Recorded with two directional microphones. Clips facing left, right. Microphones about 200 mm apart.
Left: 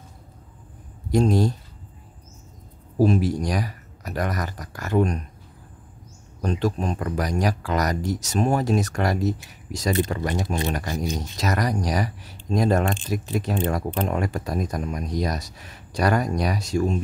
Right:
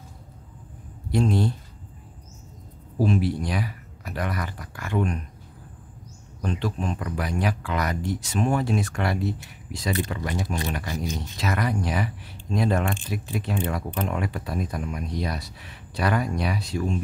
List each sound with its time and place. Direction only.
1.1 s speech: 40° left (ahead or behind)
3.0 s speech: 40° left (ahead or behind)
6.4 s speech: 40° left (ahead or behind)